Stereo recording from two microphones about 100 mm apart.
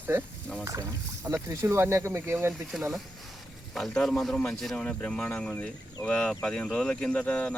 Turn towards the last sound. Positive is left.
turn(degrees=15)  # may be behind; listen again after turning